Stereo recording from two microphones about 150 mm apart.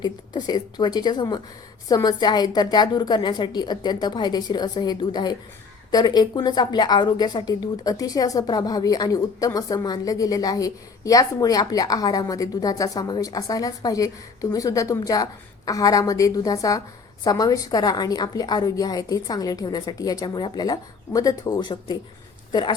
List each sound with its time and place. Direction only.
0.0 s a woman's voice: 30° left (ahead or behind)